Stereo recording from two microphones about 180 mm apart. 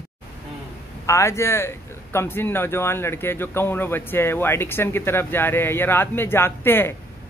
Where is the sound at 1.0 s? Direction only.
15° left (ahead or behind).